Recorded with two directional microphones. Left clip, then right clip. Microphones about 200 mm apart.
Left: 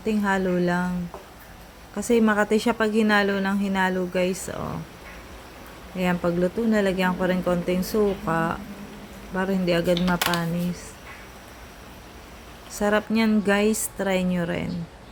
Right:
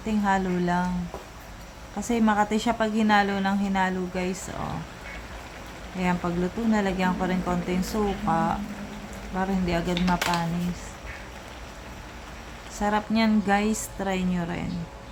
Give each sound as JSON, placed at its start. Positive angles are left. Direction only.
{"t": 0.0, "sound": "a woman's voice", "side_deg": 15}
{"t": 2.0, "sound": "a woman's voice", "side_deg": 15}
{"t": 6.0, "sound": "a woman's voice", "side_deg": 20}
{"t": 12.8, "sound": "a woman's voice", "side_deg": 20}